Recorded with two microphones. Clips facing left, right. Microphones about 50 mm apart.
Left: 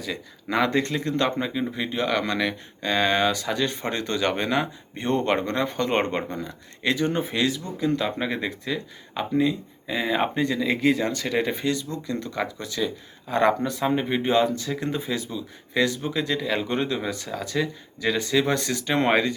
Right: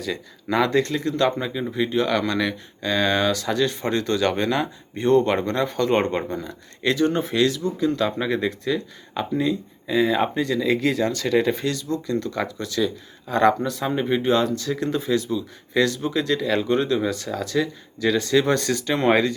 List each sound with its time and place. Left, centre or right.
0.7 s speech: left
1.5 s speech: centre
2.8 s speech: left
18.3 s speech: centre
18.9 s speech: left